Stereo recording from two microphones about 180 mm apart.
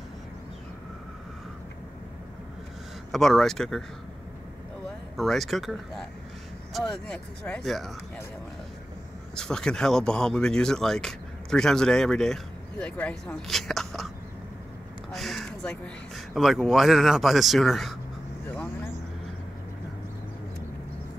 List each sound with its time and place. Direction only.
3.1 s speech: centre (ahead or behind)
5.1 s speech: centre (ahead or behind)
9.3 s speech: 5° left (ahead or behind)
15.1 s a sound: centre (ahead or behind)
16.3 s speech: centre (ahead or behind)